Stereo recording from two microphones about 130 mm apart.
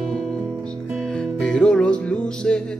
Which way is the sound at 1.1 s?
5° left (ahead or behind).